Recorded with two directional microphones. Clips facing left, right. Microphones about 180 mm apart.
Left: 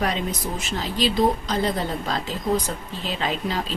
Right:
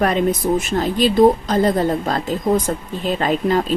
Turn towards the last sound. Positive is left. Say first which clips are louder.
# right 8 dB
turn(degrees=-50)  # may be behind; listen again after turning